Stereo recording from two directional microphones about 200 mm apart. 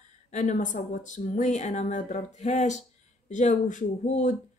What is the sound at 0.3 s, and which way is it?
Speech, 35° left (ahead or behind).